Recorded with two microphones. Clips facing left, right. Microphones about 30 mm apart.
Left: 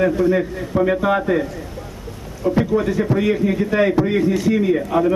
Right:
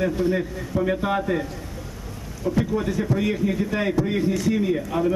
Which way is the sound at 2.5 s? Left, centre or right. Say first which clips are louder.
Left 5 dB; left.